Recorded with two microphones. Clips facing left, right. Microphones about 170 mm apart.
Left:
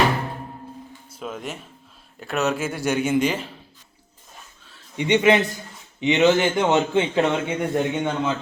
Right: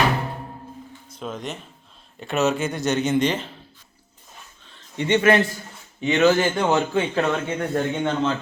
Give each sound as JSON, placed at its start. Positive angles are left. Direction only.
{"t": 1.1, "sound": "speech", "side_deg": 5}
{"t": 4.6, "sound": "a sound", "side_deg": 5}
{"t": 5.0, "sound": "a man's voice", "side_deg": 15}